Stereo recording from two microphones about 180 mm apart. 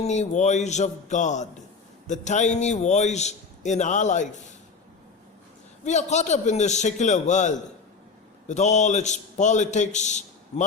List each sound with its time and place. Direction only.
0.0 s a man's voice: 40° left (ahead or behind)
5.8 s a man's voice: 40° left (ahead or behind)